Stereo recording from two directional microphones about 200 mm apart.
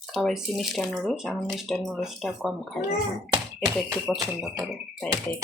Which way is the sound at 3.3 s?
20° right (ahead or behind).